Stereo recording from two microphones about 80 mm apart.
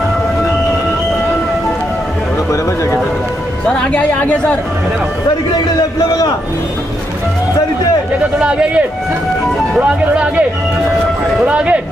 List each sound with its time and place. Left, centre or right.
3.6 s speech: centre
5.8 s a man's voice: left
8.4 s speech: centre
11.4 s speech: centre